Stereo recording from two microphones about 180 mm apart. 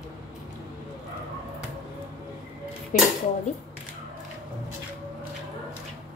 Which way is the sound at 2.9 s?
50° left (ahead or behind).